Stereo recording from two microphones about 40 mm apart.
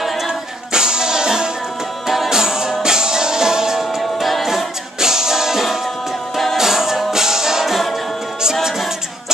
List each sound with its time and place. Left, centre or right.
0.3 s music: centre
4.0 s a capella: centre
4.5 s music: centre